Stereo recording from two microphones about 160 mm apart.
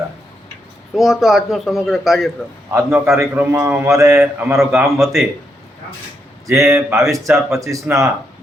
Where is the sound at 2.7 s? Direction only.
15° right (ahead or behind).